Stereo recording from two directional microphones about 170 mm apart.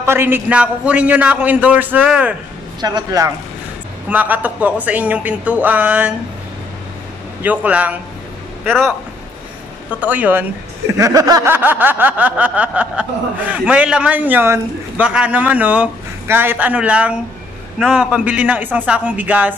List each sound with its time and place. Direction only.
0.0 s a man's voice: 15° right (ahead or behind)
2.8 s speech: 25° right (ahead or behind)
4.1 s a man's voice: 10° right (ahead or behind)
7.4 s a man's voice: 10° right (ahead or behind)
9.9 s a man's voice: 10° right (ahead or behind)